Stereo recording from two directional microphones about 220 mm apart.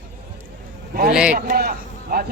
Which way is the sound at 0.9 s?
40° right (ahead or behind).